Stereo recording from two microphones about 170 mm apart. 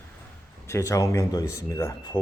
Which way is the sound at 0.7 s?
15° left (ahead or behind).